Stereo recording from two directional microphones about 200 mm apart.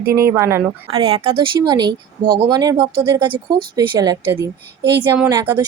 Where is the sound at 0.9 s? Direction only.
30° right (ahead or behind).